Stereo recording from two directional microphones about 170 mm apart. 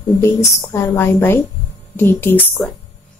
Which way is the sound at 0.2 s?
15° left (ahead or behind).